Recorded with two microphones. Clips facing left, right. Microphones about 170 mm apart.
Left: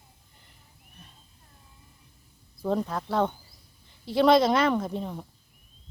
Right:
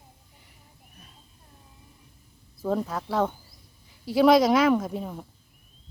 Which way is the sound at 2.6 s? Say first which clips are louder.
Even; 5° right (ahead or behind).